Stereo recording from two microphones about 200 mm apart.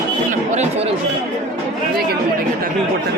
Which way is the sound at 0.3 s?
35° right (ahead or behind).